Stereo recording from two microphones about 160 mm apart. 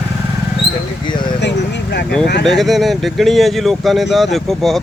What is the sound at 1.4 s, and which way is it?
Vehicle, 90° left.